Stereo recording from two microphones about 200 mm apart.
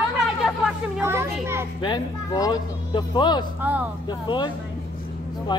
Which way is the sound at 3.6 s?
10° right (ahead or behind).